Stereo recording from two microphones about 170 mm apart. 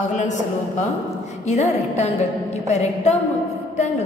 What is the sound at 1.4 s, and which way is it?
A woman's voice, 45° left (ahead or behind).